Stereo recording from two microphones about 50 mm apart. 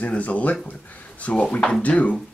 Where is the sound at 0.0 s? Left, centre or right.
Left.